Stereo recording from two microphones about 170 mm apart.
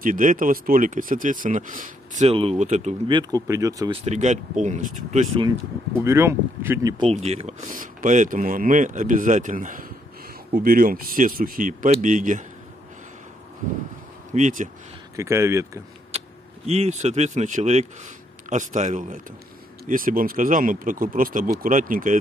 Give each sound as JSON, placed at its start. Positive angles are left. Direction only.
{"t": 0.0, "sound": "speech", "side_deg": -50}
{"t": 3.1, "sound": "speech", "side_deg": -25}
{"t": 3.9, "sound": "speech", "side_deg": -40}
{"t": 5.9, "sound": "speech", "side_deg": -15}
{"t": 7.0, "sound": "speech", "side_deg": -40}
{"t": 14.3, "sound": "speech", "side_deg": -50}
{"t": 15.1, "sound": "speech", "side_deg": -15}
{"t": 16.6, "sound": "speech", "side_deg": -40}